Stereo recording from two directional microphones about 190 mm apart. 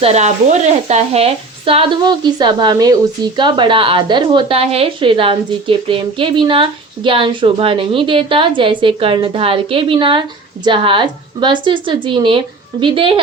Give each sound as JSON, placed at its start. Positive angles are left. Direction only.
{"t": 0.0, "sound": "a woman's voice", "side_deg": -35}